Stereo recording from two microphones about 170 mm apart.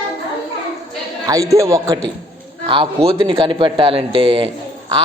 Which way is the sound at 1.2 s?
20° right (ahead or behind).